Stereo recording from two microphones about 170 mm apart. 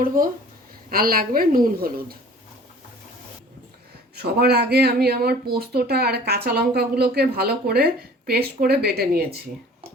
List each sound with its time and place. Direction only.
0.9 s a woman's voice: 60° right (ahead or behind)
4.1 s a woman's voice: 70° right (ahead or behind)